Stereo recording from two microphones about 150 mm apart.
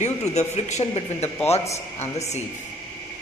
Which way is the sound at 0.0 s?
50° left (ahead or behind).